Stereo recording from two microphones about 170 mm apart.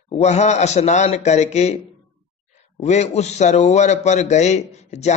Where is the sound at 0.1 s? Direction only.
40° left (ahead or behind).